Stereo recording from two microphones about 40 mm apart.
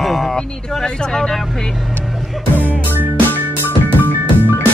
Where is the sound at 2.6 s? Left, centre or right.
Left.